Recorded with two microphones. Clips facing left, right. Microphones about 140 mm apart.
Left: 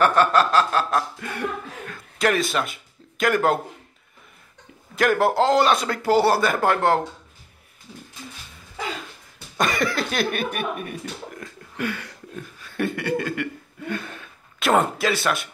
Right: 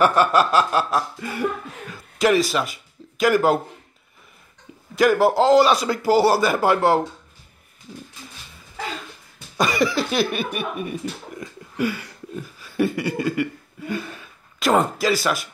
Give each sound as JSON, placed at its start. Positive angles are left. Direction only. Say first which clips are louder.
{"t": 0.0, "sound": "speech", "louder": "right 1 dB", "side_deg": -10}
{"t": 4.9, "sound": "a man's voice", "louder": "right 3 dB", "side_deg": -5}
{"t": 9.6, "sound": "speech", "louder": "right 3 dB", "side_deg": -5}